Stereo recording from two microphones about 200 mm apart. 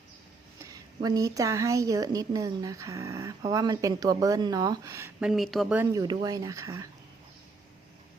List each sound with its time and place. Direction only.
0.6 s a woman's voice: 20° right (ahead or behind)